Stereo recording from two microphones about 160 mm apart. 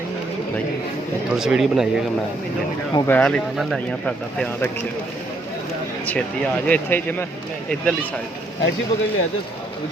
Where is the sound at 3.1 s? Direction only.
5° left (ahead or behind).